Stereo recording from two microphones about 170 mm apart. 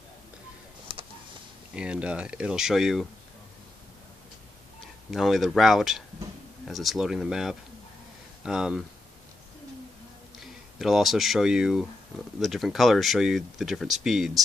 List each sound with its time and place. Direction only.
0.9 s a sound: 30° right (ahead or behind)
1.8 s speech: 5° right (ahead or behind)
5.1 s speech: centre (ahead or behind)
10.4 s speech: centre (ahead or behind)